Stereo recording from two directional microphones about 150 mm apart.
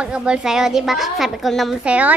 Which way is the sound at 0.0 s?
5° right (ahead or behind).